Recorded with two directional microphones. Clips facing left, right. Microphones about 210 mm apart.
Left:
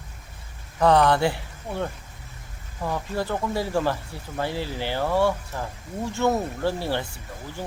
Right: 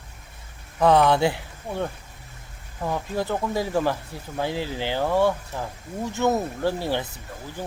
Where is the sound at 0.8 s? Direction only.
5° right (ahead or behind).